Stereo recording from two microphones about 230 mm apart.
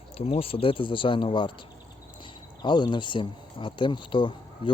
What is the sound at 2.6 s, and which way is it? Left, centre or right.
Speech, centre.